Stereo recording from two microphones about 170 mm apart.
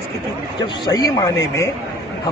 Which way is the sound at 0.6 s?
25° left (ahead or behind).